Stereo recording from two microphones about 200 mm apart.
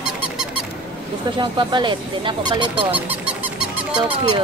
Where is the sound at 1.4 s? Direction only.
25° right (ahead or behind).